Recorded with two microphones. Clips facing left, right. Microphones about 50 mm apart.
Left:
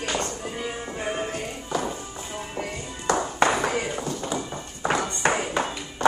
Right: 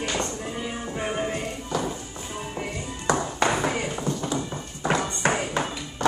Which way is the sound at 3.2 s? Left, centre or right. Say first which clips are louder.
Left 5 dB; centre.